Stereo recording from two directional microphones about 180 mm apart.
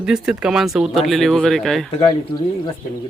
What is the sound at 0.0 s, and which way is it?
Speech, 5° right (ahead or behind).